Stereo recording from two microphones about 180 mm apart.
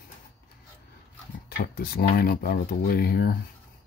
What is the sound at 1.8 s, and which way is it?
Speech, 55° left (ahead or behind).